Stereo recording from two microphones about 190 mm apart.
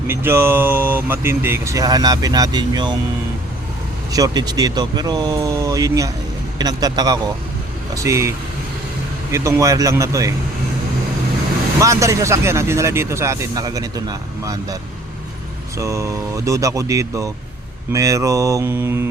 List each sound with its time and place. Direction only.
0.1 s speech: 10° right (ahead or behind)
4.1 s speech: 20° right (ahead or behind)
9.3 s speech: 15° right (ahead or behind)
11.8 s speech: 15° right (ahead or behind)
15.8 s speech: 15° right (ahead or behind)